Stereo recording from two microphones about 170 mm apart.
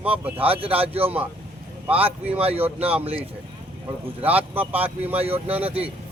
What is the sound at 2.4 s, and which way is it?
Speech, 35° right (ahead or behind).